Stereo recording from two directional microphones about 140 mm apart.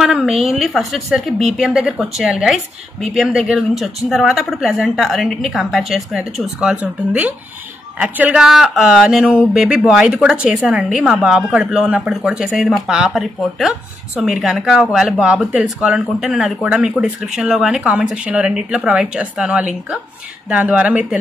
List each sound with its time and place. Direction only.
0.0 s a woman's voice: 5° right (ahead or behind)